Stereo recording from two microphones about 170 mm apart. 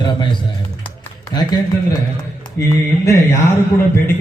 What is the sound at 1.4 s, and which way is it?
A man's voice, 25° left (ahead or behind).